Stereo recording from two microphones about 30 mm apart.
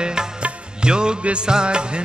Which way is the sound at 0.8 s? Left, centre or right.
Right.